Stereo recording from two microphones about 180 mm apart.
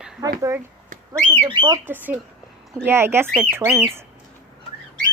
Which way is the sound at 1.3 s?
25° right (ahead or behind).